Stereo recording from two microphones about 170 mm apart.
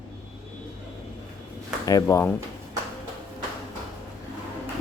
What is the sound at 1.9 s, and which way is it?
Speech, 20° left (ahead or behind).